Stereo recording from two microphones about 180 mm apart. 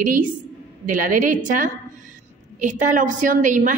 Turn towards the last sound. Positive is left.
turn(degrees=-45)  # may be behind; listen again after turning